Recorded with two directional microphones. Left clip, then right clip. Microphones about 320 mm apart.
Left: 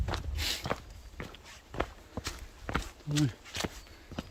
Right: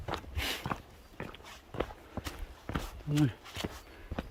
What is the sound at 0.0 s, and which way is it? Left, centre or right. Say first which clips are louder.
Walk: left 1 dB; centre.